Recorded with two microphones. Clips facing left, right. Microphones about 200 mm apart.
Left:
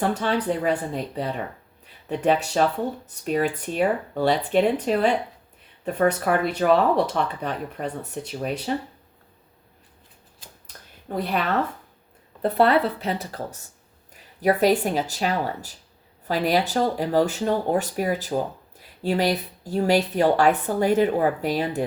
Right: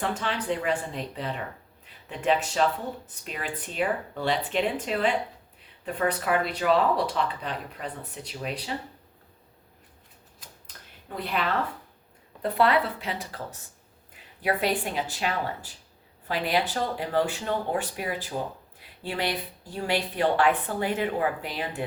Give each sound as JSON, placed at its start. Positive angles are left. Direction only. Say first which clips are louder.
{"t": 0.0, "sound": "speech", "louder": "left 6 dB", "side_deg": 40}
{"t": 11.1, "sound": "speech", "louder": "left 4 dB", "side_deg": 45}